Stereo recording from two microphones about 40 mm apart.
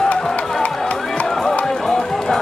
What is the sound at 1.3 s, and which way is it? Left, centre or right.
Music, centre.